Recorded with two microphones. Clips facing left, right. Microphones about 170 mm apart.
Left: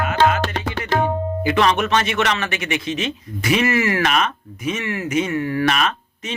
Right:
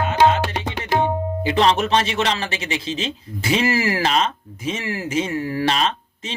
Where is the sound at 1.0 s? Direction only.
30° right (ahead or behind).